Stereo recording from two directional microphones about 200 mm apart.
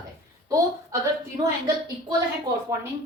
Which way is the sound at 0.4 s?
15° right (ahead or behind).